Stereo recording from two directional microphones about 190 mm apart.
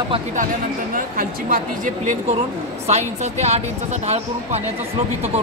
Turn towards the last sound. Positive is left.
turn(degrees=-35)  # may be behind; listen again after turning